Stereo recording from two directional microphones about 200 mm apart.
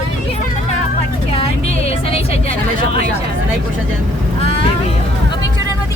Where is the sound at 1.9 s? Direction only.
30° left (ahead or behind).